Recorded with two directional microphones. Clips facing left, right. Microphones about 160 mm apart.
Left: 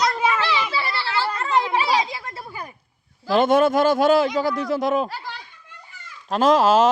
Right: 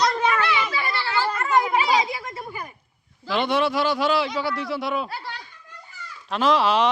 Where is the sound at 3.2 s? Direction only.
45° left (ahead or behind).